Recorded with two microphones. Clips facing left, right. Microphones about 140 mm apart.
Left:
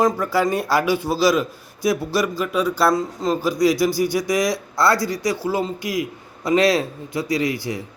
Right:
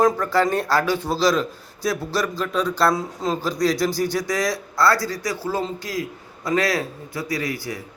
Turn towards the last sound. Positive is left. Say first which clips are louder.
# left 4 dB
turn(degrees=20)  # may be behind; listen again after turning